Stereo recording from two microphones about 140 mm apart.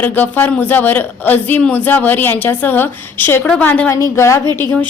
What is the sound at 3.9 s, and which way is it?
Speech, 20° left (ahead or behind).